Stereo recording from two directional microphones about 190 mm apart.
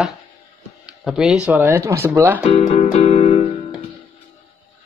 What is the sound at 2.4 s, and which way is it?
Music, 30° left (ahead or behind).